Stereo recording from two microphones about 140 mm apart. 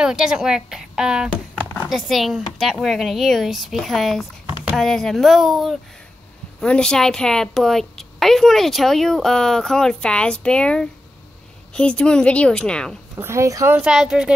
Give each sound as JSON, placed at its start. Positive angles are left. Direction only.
{"t": 0.0, "sound": "a woman's voice", "side_deg": -5}
{"t": 13.2, "sound": "speech", "side_deg": -20}
{"t": 13.7, "sound": "a woman's voice", "side_deg": -5}